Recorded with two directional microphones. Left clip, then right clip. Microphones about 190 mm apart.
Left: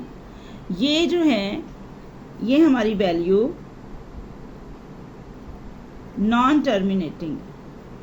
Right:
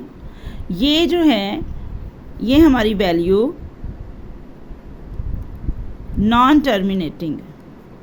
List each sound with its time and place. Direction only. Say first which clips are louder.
0.7 s a woman's voice: right 4 dB; 50° right (ahead or behind)
6.2 s a woman's voice: right 6 dB; 55° right (ahead or behind)